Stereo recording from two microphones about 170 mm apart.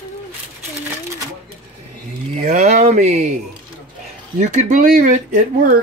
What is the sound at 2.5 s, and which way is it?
Speech, 45° right (ahead or behind).